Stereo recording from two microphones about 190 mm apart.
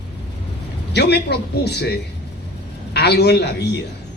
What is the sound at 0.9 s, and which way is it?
A man's voice, 60° left (ahead or behind).